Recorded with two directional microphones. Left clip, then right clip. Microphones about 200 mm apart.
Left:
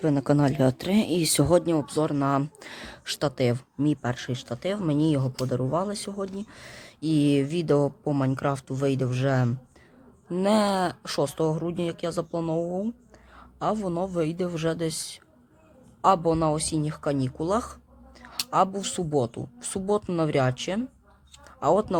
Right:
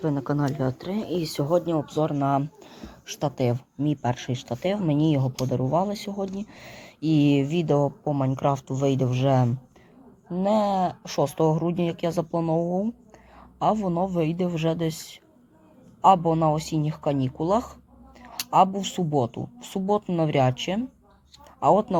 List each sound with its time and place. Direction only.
0.0 s speech: 30° left (ahead or behind)
1.7 s speech: 25° left (ahead or behind)
3.2 s speech: 25° left (ahead or behind)
4.0 s speech: 10° left (ahead or behind)
10.3 s speech: 30° left (ahead or behind)
11.1 s speech: 10° left (ahead or behind)